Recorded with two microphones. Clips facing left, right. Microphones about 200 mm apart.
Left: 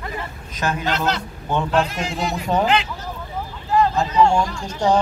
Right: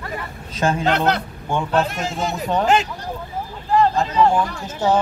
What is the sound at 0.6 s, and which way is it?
Music, 30° right (ahead or behind).